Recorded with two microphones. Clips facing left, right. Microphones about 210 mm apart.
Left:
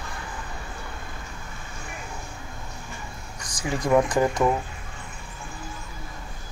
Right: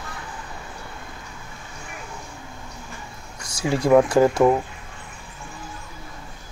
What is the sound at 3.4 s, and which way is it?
Speech, 10° right (ahead or behind).